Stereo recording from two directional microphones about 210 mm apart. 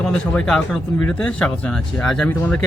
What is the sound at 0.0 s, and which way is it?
Speech, 5° left (ahead or behind).